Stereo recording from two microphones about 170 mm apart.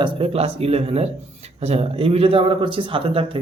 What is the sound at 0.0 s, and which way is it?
Speech, 35° right (ahead or behind).